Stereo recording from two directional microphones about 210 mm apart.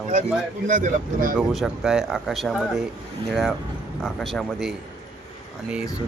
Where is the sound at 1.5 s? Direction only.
Centre (ahead or behind).